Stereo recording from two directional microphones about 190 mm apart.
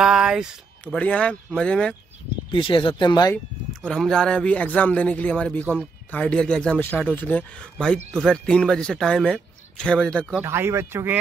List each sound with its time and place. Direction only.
0.0 s speech: 5° right (ahead or behind)
2.5 s speech: 25° left (ahead or behind)
3.8 s speech: 5° left (ahead or behind)
10.4 s speech: 15° right (ahead or behind)